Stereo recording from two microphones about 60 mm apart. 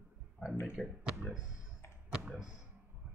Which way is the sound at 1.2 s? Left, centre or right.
Centre.